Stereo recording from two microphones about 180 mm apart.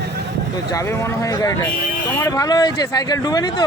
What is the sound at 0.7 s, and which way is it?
Speech, 15° left (ahead or behind).